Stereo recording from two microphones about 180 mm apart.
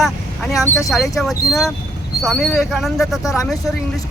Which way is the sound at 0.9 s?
Centre (ahead or behind).